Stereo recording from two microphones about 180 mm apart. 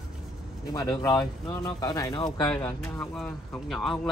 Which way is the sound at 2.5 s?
5° left (ahead or behind).